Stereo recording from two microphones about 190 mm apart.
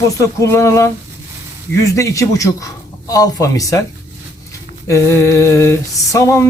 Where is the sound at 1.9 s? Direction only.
15° left (ahead or behind).